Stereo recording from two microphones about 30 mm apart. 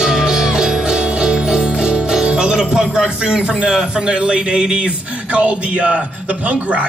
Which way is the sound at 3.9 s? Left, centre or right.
Right.